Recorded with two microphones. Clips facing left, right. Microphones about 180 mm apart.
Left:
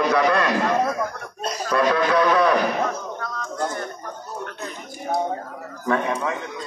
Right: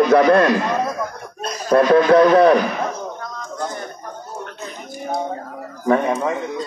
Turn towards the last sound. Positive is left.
turn(degrees=-30)  # may be behind; listen again after turning